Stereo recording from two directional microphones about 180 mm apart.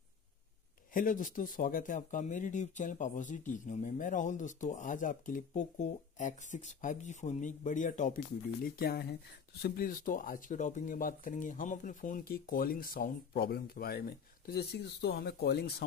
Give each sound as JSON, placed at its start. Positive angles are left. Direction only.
{"t": 0.9, "sound": "speech", "side_deg": 50}
{"t": 8.6, "sound": "speech", "side_deg": 55}